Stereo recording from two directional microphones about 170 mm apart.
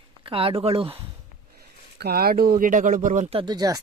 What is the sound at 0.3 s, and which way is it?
Speech, 35° right (ahead or behind).